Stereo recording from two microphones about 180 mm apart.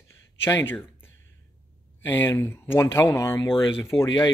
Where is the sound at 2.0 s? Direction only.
10° left (ahead or behind).